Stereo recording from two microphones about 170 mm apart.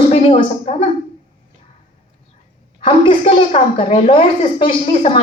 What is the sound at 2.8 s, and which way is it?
Speech, 30° left (ahead or behind).